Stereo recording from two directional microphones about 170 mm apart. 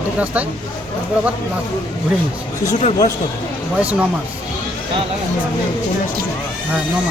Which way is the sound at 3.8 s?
10° right (ahead or behind).